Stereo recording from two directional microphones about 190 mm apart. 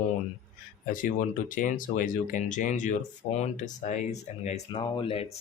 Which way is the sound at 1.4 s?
45° left (ahead or behind).